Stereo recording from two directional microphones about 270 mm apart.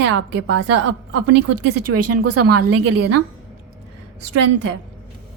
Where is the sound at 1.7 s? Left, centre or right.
Right.